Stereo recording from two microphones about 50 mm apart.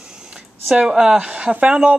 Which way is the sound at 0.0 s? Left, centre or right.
Centre.